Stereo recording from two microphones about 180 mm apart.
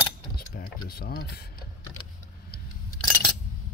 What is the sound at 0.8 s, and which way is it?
Speech, 55° left (ahead or behind).